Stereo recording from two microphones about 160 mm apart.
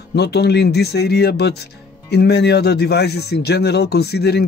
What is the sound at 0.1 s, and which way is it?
Speech, 90° left.